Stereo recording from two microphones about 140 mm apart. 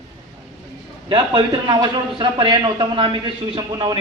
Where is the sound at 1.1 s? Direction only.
35° right (ahead or behind).